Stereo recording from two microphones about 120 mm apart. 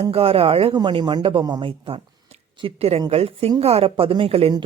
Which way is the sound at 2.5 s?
50° right (ahead or behind).